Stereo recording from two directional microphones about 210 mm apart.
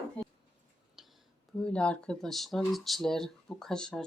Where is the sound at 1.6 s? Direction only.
5° left (ahead or behind).